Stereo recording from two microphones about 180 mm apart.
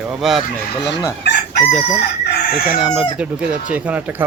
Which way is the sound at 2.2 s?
60° left (ahead or behind).